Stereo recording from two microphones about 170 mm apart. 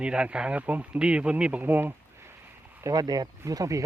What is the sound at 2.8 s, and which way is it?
Speech, 20° right (ahead or behind).